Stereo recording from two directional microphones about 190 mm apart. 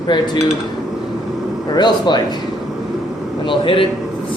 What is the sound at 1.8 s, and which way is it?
Speech, 25° left (ahead or behind).